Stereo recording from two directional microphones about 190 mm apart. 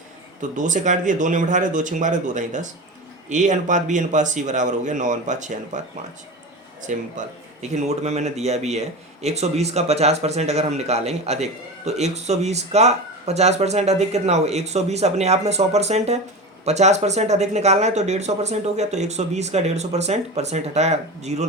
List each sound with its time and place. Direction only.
0.5 s speech: 40° right (ahead or behind)
6.9 s speech: 40° right (ahead or behind)